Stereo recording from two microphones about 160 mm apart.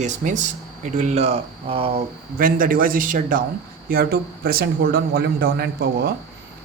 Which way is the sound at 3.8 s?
70° right (ahead or behind).